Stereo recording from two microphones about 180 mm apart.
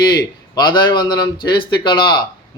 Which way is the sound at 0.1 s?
25° left (ahead or behind).